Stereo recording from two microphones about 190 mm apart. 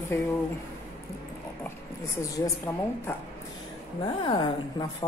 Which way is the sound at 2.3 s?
15° left (ahead or behind).